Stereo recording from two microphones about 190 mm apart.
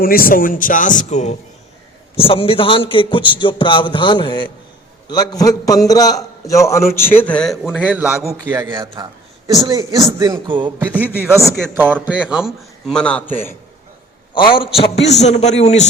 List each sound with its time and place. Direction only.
0.0 s a man's voice: 50° left (ahead or behind); by 10.7 s 25° right (ahead or behind)
10.8 s a man's voice: 10° right (ahead or behind); by 13.3 s 5° left (ahead or behind)
14.3 s a man's voice: 25° left (ahead or behind)